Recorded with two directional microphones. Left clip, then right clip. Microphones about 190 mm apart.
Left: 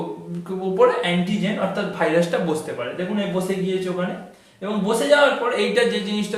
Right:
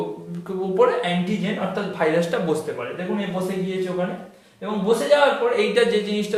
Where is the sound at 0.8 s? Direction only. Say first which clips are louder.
Left 2 dB; 15° right (ahead or behind).